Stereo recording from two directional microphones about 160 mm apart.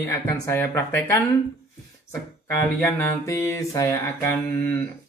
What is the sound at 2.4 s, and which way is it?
Speech, 15° left (ahead or behind).